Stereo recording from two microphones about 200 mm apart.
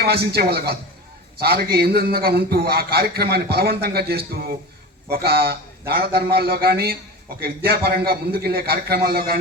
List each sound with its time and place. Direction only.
0.0 s a man's voice: 55° right (ahead or behind)